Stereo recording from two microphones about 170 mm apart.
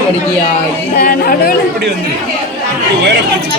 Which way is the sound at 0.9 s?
60° left (ahead or behind).